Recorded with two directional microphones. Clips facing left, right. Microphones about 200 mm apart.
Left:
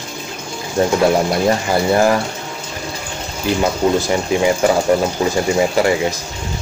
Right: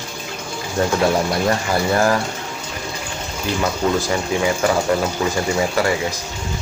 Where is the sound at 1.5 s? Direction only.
20° left (ahead or behind).